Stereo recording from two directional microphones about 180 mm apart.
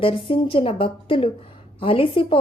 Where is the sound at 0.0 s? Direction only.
30° left (ahead or behind).